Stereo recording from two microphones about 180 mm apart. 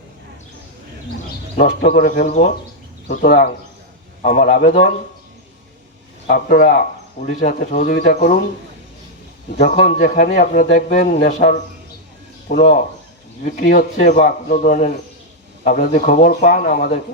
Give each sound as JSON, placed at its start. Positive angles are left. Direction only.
{"t": 1.5, "sound": "speech", "side_deg": 50}
{"t": 3.2, "sound": "speech", "side_deg": 55}
{"t": 4.2, "sound": "speech", "side_deg": 45}
{"t": 4.5, "sound": "speech", "side_deg": 60}
{"t": 6.2, "sound": "speech", "side_deg": 55}
{"t": 9.8, "sound": "speech", "side_deg": 50}
{"t": 10.8, "sound": "a man's voice", "side_deg": 40}